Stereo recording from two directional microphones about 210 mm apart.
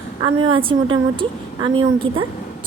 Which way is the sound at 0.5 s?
25° right (ahead or behind).